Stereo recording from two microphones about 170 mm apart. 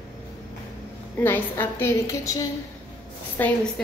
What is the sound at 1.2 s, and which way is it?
A woman's voice, 10° left (ahead or behind).